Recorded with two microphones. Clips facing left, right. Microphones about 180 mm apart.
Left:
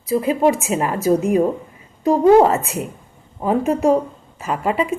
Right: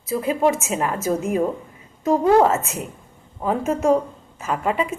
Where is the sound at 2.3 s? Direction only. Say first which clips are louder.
Left 4 dB; 20° left (ahead or behind).